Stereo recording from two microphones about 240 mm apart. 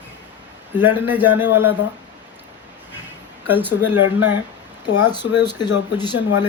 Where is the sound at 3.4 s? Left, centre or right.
Centre.